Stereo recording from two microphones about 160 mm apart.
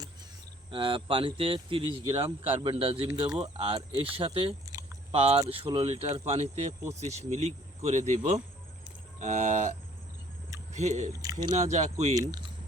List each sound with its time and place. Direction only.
0.7 s speech: 30° right (ahead or behind)
3.1 s speech: 25° right (ahead or behind)
3.3 s speech: 35° right (ahead or behind)
4.7 s a sound: 20° right (ahead or behind)
5.1 s speech: 35° right (ahead or behind)
10.8 s speech: 45° right (ahead or behind)
11.1 s speech: 20° right (ahead or behind)
11.5 s speech: 45° right (ahead or behind)
12.1 s speech: 25° right (ahead or behind)